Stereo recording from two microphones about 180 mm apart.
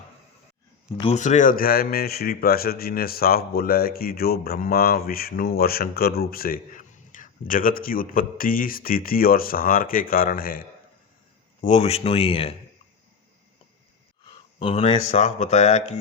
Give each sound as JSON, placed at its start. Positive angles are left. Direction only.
{"t": 1.1, "sound": "speech", "side_deg": 40}
{"t": 11.6, "sound": "speech", "side_deg": 40}
{"t": 14.6, "sound": "speech", "side_deg": 35}